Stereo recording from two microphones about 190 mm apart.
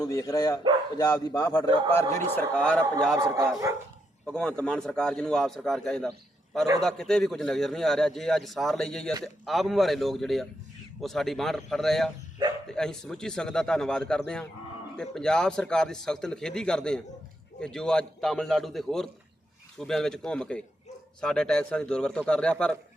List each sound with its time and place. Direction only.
0.0 s speech: 15° left (ahead or behind)
3.2 s speech: 15° right (ahead or behind)
4.3 s a man's voice: 5° left (ahead or behind)